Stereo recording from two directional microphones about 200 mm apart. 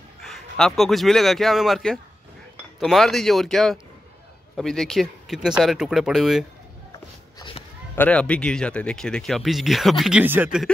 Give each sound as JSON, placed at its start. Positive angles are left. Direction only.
{"t": 0.2, "sound": "speech", "side_deg": 0}
{"t": 7.3, "sound": "a sound", "side_deg": 25}
{"t": 7.9, "sound": "speech", "side_deg": 5}